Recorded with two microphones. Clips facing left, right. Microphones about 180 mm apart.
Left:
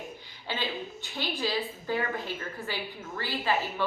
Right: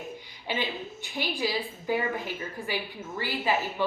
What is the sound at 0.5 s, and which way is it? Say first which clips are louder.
A woman's voice: right 2 dB; 15° right (ahead or behind).